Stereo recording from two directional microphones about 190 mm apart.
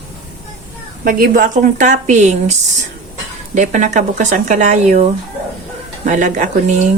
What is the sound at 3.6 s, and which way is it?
Speech, 40° right (ahead or behind).